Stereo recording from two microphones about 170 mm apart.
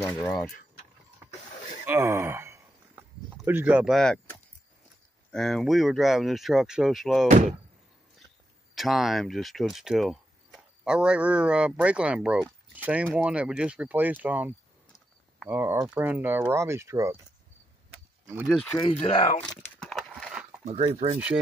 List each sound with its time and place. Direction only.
1.9 s a sound: 15° right (ahead or behind)
3.4 s speech: 10° right (ahead or behind)
5.3 s speech: centre (ahead or behind)
7.2 s speech: 45° right (ahead or behind)
8.7 s speech: centre (ahead or behind); by 17.2 s 15° right (ahead or behind)
18.2 s a sound: 10° right (ahead or behind)
18.5 s speech: 5° left (ahead or behind)
18.8 s speech: 35° left (ahead or behind)
19.4 s a sound: 5° left (ahead or behind)
20.6 s speech: 35° right (ahead or behind)